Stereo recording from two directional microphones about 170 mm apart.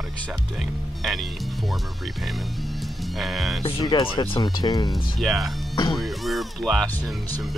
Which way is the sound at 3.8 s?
25° left (ahead or behind).